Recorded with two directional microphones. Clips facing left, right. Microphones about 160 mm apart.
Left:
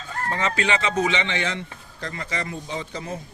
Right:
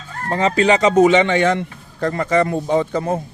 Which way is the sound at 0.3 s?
35° right (ahead or behind).